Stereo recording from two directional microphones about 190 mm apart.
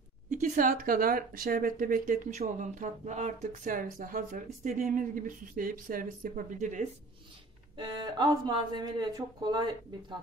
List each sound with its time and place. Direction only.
0.3 s speech: 45° right (ahead or behind)
7.7 s speech: 20° right (ahead or behind)